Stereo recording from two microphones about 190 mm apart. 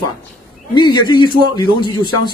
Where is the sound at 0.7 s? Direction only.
25° left (ahead or behind).